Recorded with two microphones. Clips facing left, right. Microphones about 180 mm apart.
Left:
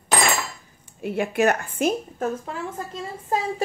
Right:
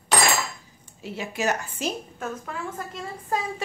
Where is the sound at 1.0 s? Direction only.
55° left (ahead or behind).